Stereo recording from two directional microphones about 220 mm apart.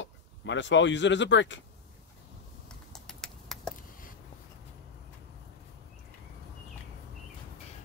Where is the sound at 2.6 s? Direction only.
Centre (ahead or behind).